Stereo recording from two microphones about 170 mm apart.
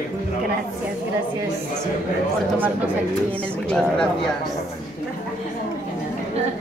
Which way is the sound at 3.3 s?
5° left (ahead or behind).